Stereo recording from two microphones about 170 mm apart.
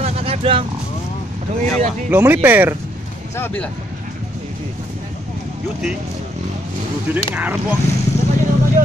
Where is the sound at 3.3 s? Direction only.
10° left (ahead or behind).